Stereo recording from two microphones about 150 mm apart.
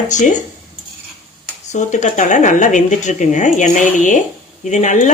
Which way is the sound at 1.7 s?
55° left (ahead or behind).